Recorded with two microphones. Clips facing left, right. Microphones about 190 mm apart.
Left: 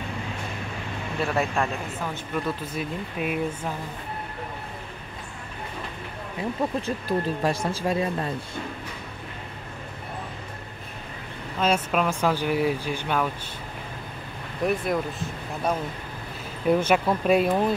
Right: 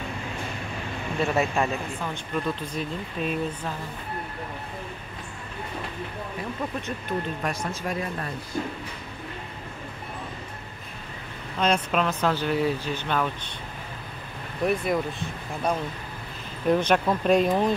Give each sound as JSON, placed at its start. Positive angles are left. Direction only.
{"t": 1.2, "sound": "speech", "side_deg": 0}
{"t": 6.6, "sound": "speech", "side_deg": 25}
{"t": 11.6, "sound": "speech", "side_deg": 5}
{"t": 14.7, "sound": "speech", "side_deg": 0}